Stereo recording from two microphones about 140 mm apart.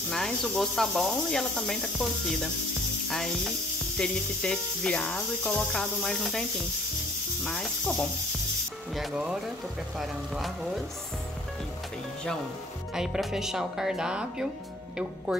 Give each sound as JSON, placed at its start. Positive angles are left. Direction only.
{"t": 0.1, "sound": "snake", "side_deg": 0}
{"t": 7.4, "sound": "snake", "side_deg": 0}
{"t": 12.9, "sound": "snake", "side_deg": -5}